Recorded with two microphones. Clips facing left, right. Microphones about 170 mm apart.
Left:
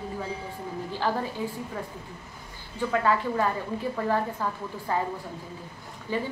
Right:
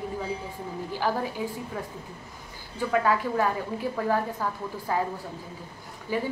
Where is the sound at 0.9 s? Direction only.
10° right (ahead or behind).